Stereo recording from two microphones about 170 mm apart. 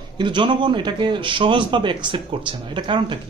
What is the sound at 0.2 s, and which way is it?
A man's voice, 30° right (ahead or behind).